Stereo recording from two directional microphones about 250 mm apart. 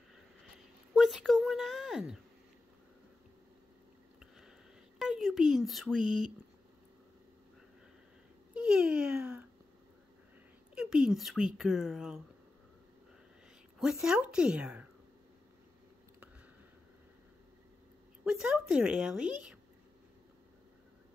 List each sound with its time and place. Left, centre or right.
0.9 s a woman's voice: centre
4.9 s speech: centre
8.6 s speech: centre
10.7 s a woman's voice: centre
13.7 s a woman's voice: centre
18.2 s a woman's voice: centre